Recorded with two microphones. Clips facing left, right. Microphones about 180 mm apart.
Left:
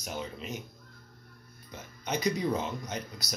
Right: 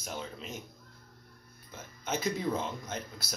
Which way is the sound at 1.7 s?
Centre (ahead or behind).